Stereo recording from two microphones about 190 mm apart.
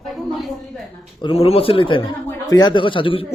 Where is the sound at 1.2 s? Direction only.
30° left (ahead or behind).